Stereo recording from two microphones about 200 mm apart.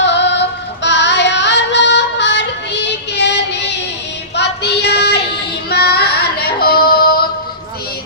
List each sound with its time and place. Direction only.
0.0 s music: 60° left (ahead or behind)
4.4 s child singing: 55° left (ahead or behind)